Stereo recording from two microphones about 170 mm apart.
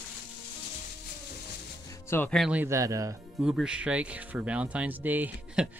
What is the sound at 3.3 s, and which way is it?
Speech, 5° right (ahead or behind).